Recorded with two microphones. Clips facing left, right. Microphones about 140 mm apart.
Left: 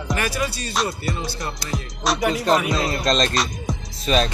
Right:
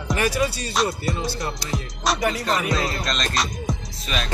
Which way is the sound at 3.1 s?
35° left (ahead or behind).